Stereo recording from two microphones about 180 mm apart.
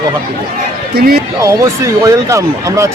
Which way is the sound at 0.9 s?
55° right (ahead or behind).